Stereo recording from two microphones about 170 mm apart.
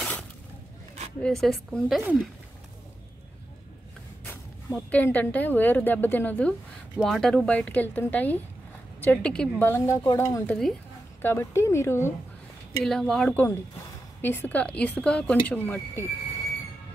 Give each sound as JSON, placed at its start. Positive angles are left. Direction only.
{"t": 1.2, "sound": "speech", "side_deg": 5}
{"t": 4.3, "sound": "speech", "side_deg": 10}
{"t": 12.8, "sound": "speech", "side_deg": 0}